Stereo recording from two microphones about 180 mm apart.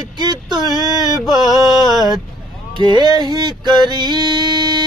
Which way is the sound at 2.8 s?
25° right (ahead or behind).